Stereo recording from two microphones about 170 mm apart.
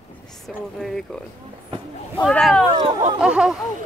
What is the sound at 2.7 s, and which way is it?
Speech, 30° right (ahead or behind).